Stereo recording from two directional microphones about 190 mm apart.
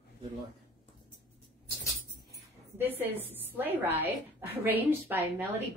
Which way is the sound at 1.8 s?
15° left (ahead or behind).